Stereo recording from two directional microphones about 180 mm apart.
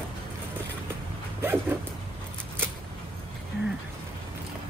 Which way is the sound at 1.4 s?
10° right (ahead or behind).